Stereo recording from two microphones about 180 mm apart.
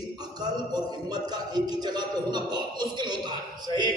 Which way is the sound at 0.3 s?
25° right (ahead or behind).